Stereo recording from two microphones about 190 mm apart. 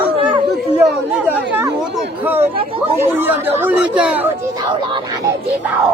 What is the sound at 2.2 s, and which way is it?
Chatter, 10° right (ahead or behind).